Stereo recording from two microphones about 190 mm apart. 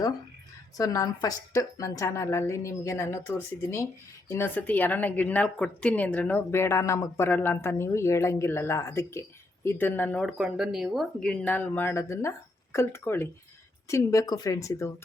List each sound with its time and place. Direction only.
0.8 s a woman's voice: 20° left (ahead or behind)